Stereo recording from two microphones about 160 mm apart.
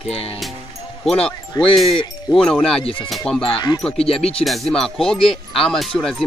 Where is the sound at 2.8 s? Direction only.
35° left (ahead or behind).